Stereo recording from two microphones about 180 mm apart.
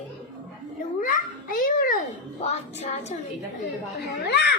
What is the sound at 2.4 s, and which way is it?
Child singing, 35° left (ahead or behind).